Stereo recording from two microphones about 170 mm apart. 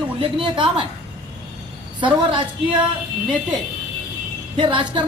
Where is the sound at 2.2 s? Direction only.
30° right (ahead or behind).